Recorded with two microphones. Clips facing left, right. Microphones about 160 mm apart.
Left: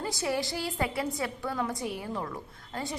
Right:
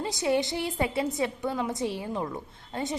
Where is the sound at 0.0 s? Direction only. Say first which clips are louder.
Right 4 dB; 20° right (ahead or behind).